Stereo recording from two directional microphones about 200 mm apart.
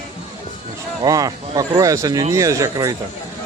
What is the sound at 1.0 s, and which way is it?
Speech, 15° right (ahead or behind).